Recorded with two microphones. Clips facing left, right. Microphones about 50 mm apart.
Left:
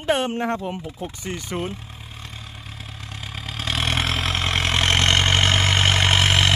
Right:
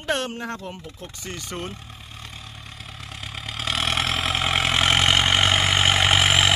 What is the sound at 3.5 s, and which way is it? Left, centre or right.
Vehicle, centre.